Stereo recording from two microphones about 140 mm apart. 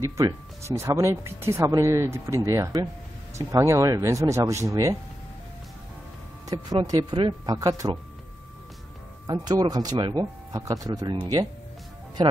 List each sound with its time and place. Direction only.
0.0 s speech: 20° right (ahead or behind)
6.5 s speech: 30° right (ahead or behind)
9.3 s speech: 30° right (ahead or behind)